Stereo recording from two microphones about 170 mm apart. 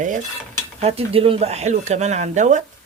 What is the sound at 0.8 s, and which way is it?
Speech, 35° right (ahead or behind).